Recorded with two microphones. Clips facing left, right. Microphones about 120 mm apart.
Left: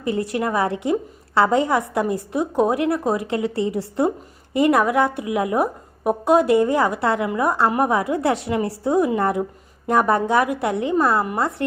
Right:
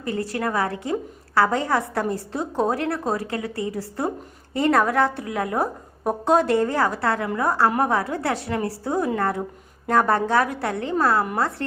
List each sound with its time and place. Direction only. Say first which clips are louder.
0.0 s a woman's voice: left 3 dB; 20° left (ahead or behind)